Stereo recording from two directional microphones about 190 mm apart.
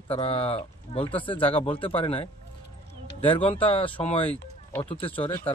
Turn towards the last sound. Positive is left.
turn(degrees=30)  # may be behind; listen again after turning